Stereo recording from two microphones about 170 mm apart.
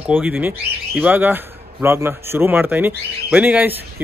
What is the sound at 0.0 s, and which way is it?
Speech, 10° right (ahead or behind).